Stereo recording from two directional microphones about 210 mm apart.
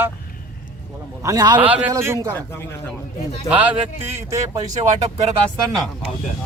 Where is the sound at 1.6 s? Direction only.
5° right (ahead or behind).